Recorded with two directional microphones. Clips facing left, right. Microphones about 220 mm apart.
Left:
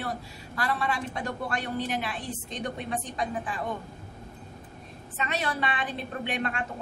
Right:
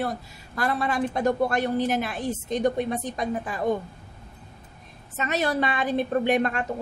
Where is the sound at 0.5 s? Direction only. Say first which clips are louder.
Right 4 dB; 40° right (ahead or behind).